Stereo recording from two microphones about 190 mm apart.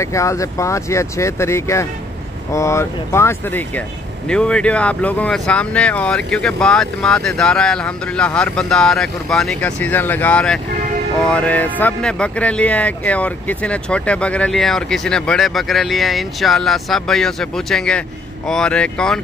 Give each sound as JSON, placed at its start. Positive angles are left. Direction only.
{"t": 0.0, "sound": "speech", "side_deg": 15}